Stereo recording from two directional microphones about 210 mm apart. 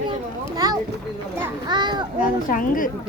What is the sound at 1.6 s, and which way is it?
Children playing, 20° right (ahead or behind).